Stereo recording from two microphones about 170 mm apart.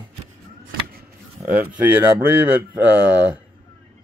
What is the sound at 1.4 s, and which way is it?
Speech, 10° right (ahead or behind).